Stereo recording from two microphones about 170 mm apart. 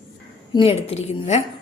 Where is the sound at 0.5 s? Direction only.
35° left (ahead or behind).